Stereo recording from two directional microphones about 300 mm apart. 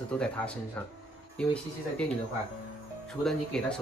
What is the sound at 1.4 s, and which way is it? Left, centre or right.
Speech, centre.